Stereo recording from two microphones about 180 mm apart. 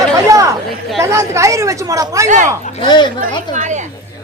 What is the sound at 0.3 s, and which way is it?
Chatter, 15° right (ahead or behind).